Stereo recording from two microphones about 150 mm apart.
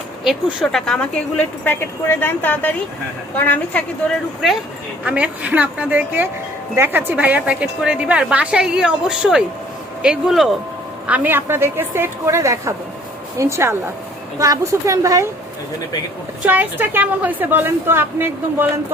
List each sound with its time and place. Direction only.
0.3 s a woman's voice: centre (ahead or behind)
5.0 s a woman's voice: 10° right (ahead or behind)
16.5 s a woman's voice: 10° right (ahead or behind)